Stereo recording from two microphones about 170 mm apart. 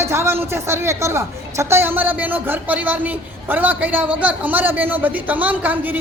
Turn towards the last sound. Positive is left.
turn(degrees=-10)  # may be behind; listen again after turning